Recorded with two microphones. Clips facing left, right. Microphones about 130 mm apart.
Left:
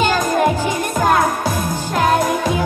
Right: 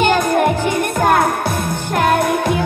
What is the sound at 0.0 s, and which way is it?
Music, 55° right (ahead or behind).